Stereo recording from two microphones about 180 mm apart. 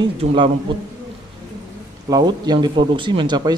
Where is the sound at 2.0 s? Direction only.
20° right (ahead or behind).